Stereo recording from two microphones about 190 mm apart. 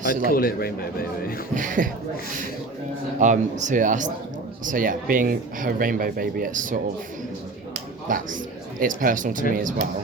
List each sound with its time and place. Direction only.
0.0 s a man's voice: 50° left (ahead or behind)
1.5 s speech: 45° right (ahead or behind)
3.2 s speech: 40° right (ahead or behind)
8.0 s speech: 45° right (ahead or behind)